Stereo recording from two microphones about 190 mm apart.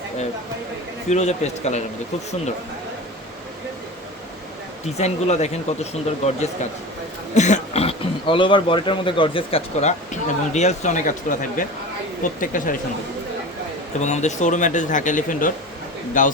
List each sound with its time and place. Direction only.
1.1 s speech: 35° left (ahead or behind)
4.9 s speech: 35° left (ahead or behind)
14.0 s speech: 40° left (ahead or behind)